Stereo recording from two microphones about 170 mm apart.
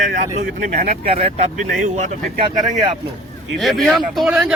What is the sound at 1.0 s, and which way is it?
Speech, 40° right (ahead or behind).